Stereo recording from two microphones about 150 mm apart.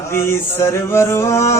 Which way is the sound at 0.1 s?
15° left (ahead or behind).